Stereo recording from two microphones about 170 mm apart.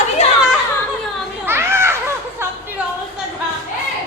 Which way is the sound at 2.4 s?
15° right (ahead or behind).